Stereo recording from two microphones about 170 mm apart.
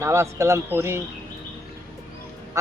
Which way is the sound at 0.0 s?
15° right (ahead or behind).